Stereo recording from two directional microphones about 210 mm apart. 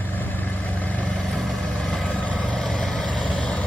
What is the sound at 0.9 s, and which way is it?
Vehicle, 5° left (ahead or behind).